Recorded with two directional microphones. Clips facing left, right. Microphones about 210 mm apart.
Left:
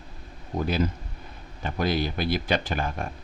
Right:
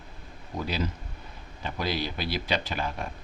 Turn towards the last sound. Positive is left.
turn(degrees=50)  # may be behind; listen again after turning